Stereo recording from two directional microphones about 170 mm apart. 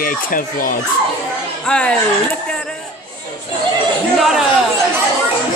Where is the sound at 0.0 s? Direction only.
55° left (ahead or behind).